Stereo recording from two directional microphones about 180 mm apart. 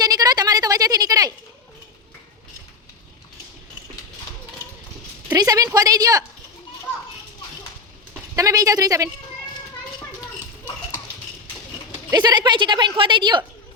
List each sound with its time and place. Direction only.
0.0 s a sound: 20° right (ahead or behind)
5.3 s a woman's voice: 20° right (ahead or behind)
8.4 s a woman's voice: 20° right (ahead or behind)
12.1 s a woman's voice: 25° right (ahead or behind)